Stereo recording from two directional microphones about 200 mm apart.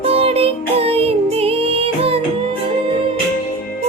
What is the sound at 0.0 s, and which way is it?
Music, 30° right (ahead or behind).